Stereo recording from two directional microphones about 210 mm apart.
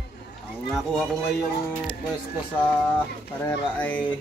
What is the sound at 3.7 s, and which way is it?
Speech, 10° left (ahead or behind).